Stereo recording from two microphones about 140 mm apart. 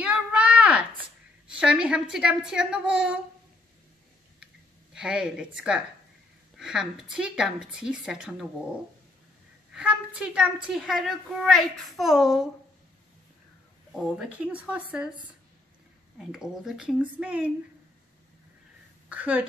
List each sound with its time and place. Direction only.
0.0 s a sound: 10° right (ahead or behind)
1.5 s a woman's voice: 5° right (ahead or behind)
4.9 s a woman's voice: 5° right (ahead or behind)
9.8 s a woman's voice: 5° right (ahead or behind)
13.9 s a woman's voice: centre (ahead or behind)
16.2 s a woman's voice: 5° right (ahead or behind)
19.0 s a woman's voice: 10° right (ahead or behind)